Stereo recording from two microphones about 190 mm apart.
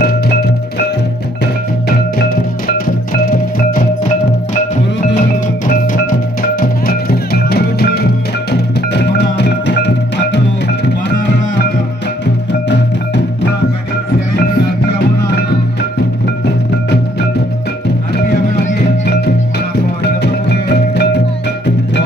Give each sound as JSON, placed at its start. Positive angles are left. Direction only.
{"t": 1.4, "sound": "music", "side_deg": 50}
{"t": 5.7, "sound": "music", "side_deg": 45}
{"t": 18.8, "sound": "music", "side_deg": 60}